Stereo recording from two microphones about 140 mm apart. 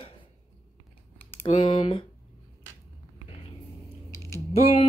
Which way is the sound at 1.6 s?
40° left (ahead or behind).